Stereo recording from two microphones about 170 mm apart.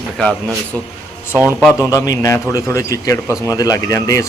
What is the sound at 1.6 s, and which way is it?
Speech, 10° right (ahead or behind).